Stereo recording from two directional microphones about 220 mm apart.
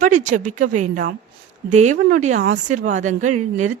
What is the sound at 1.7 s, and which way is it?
A woman's voice, 35° right (ahead or behind).